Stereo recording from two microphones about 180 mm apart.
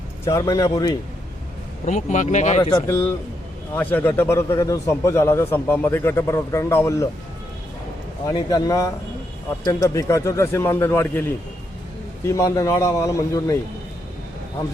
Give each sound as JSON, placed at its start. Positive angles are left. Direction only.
{"t": 0.3, "sound": "speech", "side_deg": 20}
{"t": 1.8, "sound": "speech", "side_deg": 40}
{"t": 2.6, "sound": "speech", "side_deg": 30}
{"t": 3.8, "sound": "a man's voice", "side_deg": 10}
{"t": 8.3, "sound": "a man's voice", "side_deg": 20}